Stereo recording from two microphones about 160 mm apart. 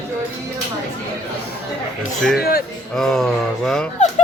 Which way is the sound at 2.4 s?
70° left (ahead or behind).